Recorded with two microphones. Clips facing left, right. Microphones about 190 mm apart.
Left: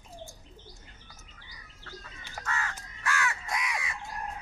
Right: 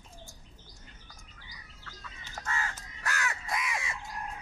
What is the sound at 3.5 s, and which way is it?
Crow, centre (ahead or behind).